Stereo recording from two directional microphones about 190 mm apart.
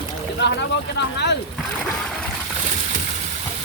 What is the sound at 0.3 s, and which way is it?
Speech, 65° left (ahead or behind).